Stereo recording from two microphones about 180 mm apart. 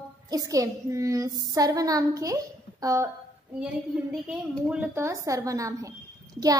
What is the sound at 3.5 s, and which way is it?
A woman's voice, 5° right (ahead or behind).